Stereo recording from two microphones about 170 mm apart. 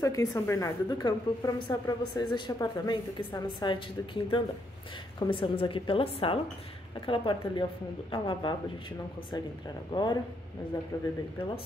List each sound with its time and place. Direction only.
0.0 s a woman's voice: 20° left (ahead or behind)
9.8 s a woman's voice: 25° left (ahead or behind)